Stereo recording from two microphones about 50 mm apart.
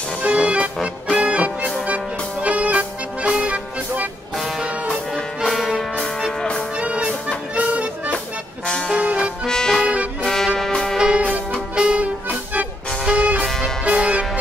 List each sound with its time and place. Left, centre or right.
0.2 s music: right
6.8 s music: right
8.9 s music: right
9.5 s music: centre
9.8 s music: centre
10.2 s music: centre
11.0 s music: centre